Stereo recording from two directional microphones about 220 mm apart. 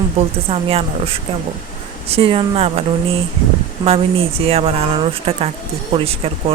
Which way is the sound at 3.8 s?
25° right (ahead or behind).